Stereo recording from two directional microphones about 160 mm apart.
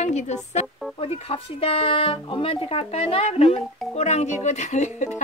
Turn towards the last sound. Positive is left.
turn(degrees=50)  # may be behind; listen again after turning